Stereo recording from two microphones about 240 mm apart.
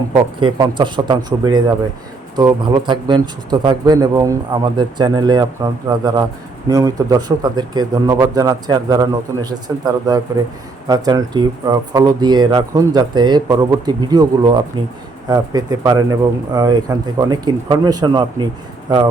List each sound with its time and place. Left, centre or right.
0.3 s a man's voice: centre